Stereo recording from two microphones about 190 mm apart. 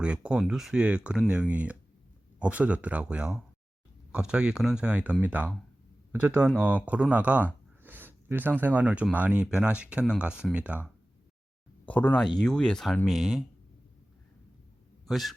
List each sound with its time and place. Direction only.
0.0 s speech: 5° right (ahead or behind)
11.9 s speech: 10° left (ahead or behind)
15.0 s a man's voice: centre (ahead or behind)